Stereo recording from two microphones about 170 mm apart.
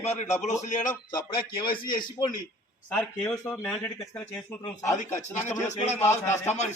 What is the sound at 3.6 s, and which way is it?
Speech, centre (ahead or behind).